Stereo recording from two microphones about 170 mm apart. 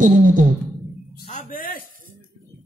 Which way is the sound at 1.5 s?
55° left (ahead or behind).